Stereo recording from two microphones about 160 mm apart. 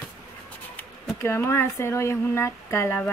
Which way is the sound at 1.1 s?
15° left (ahead or behind).